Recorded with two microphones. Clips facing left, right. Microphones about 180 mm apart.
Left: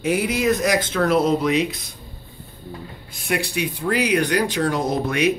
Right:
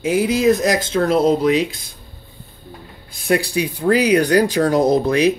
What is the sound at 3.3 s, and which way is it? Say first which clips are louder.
Speech: right 6 dB; 35° right (ahead or behind).